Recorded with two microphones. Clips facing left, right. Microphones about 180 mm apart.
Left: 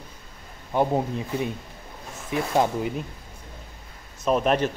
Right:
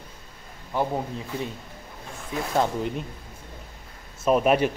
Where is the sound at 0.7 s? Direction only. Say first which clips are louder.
Left 4 dB; 20° left (ahead or behind).